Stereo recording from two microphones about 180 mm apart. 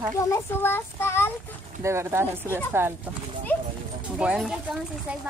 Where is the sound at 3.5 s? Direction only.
10° left (ahead or behind).